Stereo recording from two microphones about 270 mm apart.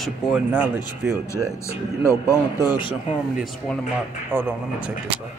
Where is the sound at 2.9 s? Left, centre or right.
Centre.